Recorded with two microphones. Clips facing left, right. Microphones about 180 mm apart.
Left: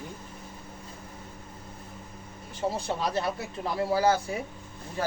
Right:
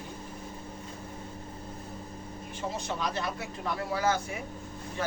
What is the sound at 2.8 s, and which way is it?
Speech, 35° left (ahead or behind).